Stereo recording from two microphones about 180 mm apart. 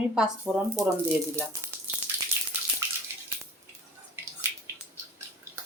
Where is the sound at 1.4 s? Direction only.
10° right (ahead or behind).